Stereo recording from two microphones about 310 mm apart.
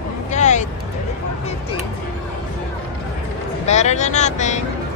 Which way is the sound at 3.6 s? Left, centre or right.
Left.